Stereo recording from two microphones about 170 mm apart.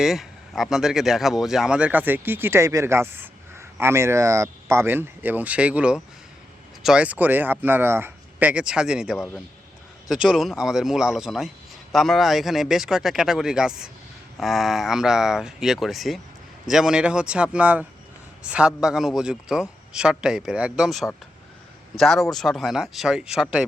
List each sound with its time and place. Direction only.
0.0 s a man's voice: centre (ahead or behind)